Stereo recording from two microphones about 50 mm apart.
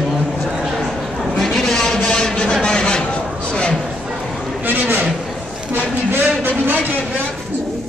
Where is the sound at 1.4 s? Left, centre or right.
Centre.